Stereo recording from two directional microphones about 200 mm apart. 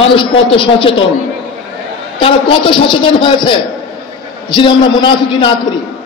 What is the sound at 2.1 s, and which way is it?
A man's voice, 25° left (ahead or behind).